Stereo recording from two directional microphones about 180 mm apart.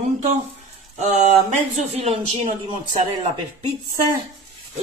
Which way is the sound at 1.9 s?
35° right (ahead or behind).